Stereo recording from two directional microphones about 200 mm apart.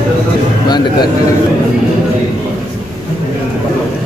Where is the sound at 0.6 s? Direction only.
20° left (ahead or behind).